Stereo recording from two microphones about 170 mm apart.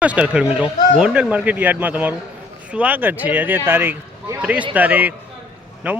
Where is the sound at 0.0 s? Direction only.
5° right (ahead or behind).